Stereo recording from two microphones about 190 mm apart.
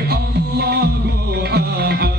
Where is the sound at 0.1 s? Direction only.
55° right (ahead or behind).